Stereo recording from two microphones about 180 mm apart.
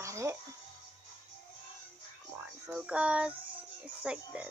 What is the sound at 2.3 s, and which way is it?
Speech, 5° right (ahead or behind).